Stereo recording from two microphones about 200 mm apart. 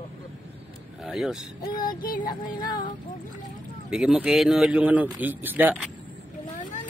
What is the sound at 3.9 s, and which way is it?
Speech, 5° right (ahead or behind).